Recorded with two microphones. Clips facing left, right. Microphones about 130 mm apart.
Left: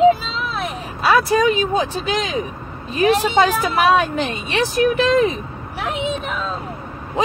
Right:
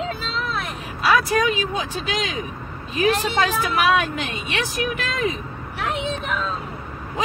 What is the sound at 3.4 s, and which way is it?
A woman's voice, 30° left (ahead or behind).